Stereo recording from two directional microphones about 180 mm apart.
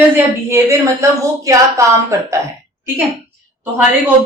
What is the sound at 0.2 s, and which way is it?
A woman's voice, 15° right (ahead or behind).